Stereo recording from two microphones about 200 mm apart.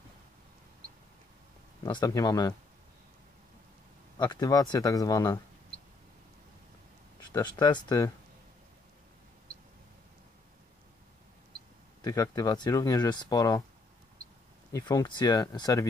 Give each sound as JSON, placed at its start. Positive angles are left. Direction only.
{"t": 1.9, "sound": "speech", "side_deg": 20}
{"t": 4.2, "sound": "speech", "side_deg": 20}
{"t": 7.2, "sound": "speech", "side_deg": 20}
{"t": 12.0, "sound": "speech", "side_deg": 15}
{"t": 14.7, "sound": "speech", "side_deg": 20}